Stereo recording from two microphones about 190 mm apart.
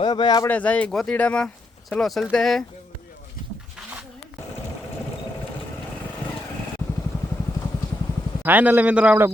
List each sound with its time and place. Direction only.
0.0 s speech: 20° left (ahead or behind)
0.5 s speech: 5° left (ahead or behind)
8.4 s a man's voice: 10° right (ahead or behind)